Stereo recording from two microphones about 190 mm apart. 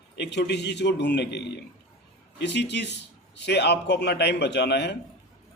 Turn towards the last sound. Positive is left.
turn(degrees=60)  # may be behind; listen again after turning